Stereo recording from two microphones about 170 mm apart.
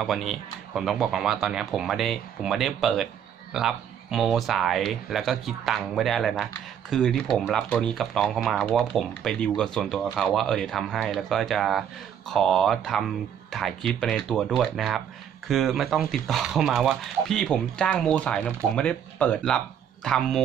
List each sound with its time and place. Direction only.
0.0 s speech: centre (ahead or behind)